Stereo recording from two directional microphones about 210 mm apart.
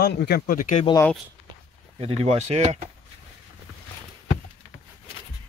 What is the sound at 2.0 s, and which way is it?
Speech, 30° right (ahead or behind).